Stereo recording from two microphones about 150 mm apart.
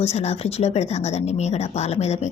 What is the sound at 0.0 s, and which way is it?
Speech, 45° left (ahead or behind).